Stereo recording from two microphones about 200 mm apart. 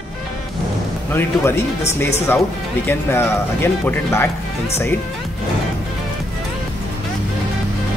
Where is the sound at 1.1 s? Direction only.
10° left (ahead or behind).